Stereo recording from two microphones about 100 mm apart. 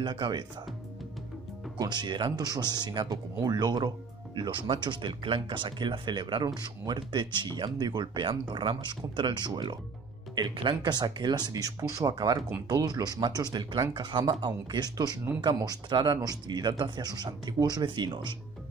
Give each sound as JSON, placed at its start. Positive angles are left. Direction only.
{"t": 0.0, "sound": "speech", "side_deg": -50}
{"t": 1.8, "sound": "speech", "side_deg": -45}